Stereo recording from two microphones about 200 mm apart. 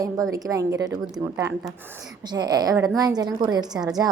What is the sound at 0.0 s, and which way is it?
A woman's voice, 15° right (ahead or behind).